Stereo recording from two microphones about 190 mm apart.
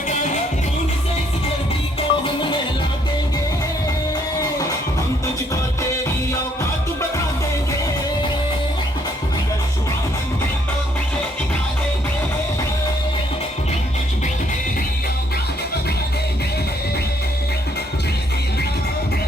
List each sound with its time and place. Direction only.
2.0 s music: 25° left (ahead or behind)